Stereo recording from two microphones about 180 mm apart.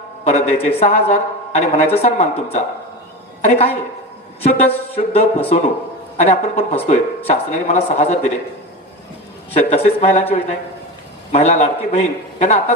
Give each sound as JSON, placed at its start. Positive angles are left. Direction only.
{"t": 0.3, "sound": "a woman's voice", "side_deg": 35}
{"t": 9.5, "sound": "a woman's voice", "side_deg": 35}